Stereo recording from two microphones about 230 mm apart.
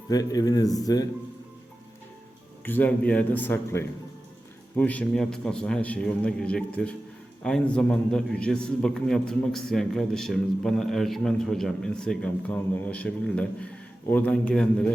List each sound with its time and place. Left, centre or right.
0.1 s a man's voice: centre
2.6 s a man's voice: centre